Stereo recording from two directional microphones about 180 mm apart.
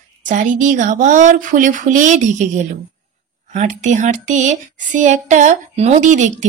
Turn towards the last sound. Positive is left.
turn(degrees=-45)  # may be behind; listen again after turning